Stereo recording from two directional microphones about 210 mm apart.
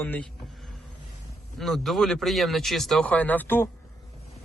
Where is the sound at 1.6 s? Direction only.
Centre (ahead or behind).